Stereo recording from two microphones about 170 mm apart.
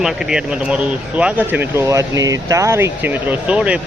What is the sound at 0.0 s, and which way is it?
Speech, 5° right (ahead or behind).